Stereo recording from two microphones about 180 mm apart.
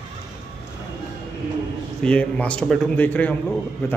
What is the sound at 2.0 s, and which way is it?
Speech, 5° left (ahead or behind).